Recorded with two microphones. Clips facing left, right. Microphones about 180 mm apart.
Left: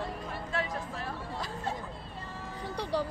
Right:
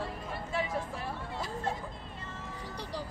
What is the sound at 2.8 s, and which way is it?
Speech, 65° left (ahead or behind).